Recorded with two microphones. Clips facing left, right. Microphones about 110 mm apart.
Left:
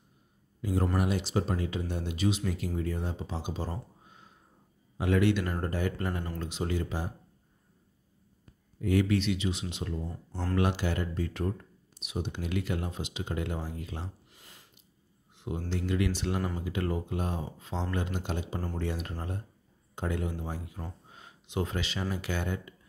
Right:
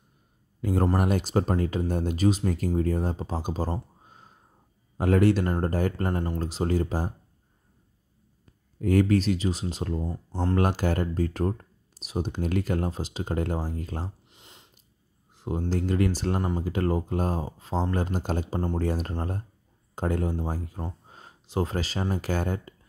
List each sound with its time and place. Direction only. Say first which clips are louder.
0.6 s speech: right 5 dB; 50° right (ahead or behind)
4.9 s speech: right 5 dB; 45° right (ahead or behind)
8.8 s speech: right 5 dB; 45° right (ahead or behind)
10.0 s speech: right 7 dB; 25° right (ahead or behind)
10.5 s speech: right 4 dB; 45° right (ahead or behind)
14.3 s a sound: right 2 dB; 20° right (ahead or behind)
15.3 s a sound: right 5 dB; 40° right (ahead or behind)
15.7 s speech: right 4 dB; 40° right (ahead or behind)
21.1 s a sound: right 4 dB; 35° right (ahead or behind)
22.1 s speech: right 7 dB; 40° right (ahead or behind)